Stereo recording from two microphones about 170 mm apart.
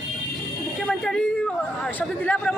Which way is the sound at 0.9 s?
5° left (ahead or behind).